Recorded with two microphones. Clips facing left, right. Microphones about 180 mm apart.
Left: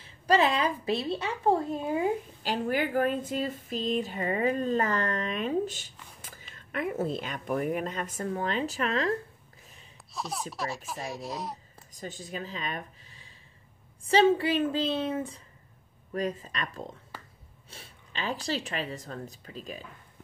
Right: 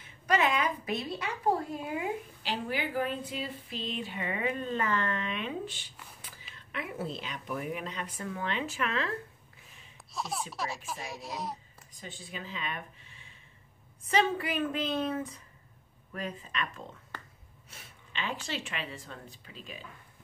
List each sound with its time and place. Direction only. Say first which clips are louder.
0.0 s a woman's voice: left 4 dB; 30° left (ahead or behind)
2.4 s speech: left 5 dB; 45° left (ahead or behind)
10.1 s speech: left 1 dB; centre (ahead or behind)
11.9 s a woman's voice: left 6 dB; 40° left (ahead or behind)
16.1 s speech: left 7 dB; 40° left (ahead or behind)